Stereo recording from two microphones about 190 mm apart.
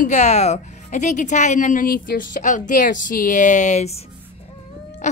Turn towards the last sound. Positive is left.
turn(degrees=35)  # may be behind; listen again after turning